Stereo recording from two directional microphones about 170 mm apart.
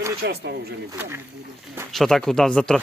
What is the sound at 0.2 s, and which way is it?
Speech, 85° right.